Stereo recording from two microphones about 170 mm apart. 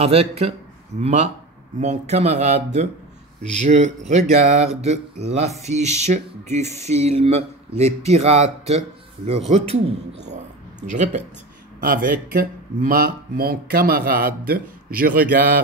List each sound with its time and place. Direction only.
0.0 s speech: 35° right (ahead or behind)
10.9 s speech: 45° right (ahead or behind)
11.8 s speech: 55° right (ahead or behind)